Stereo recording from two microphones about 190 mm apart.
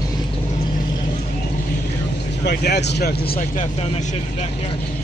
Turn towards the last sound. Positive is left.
turn(degrees=50)  # may be behind; listen again after turning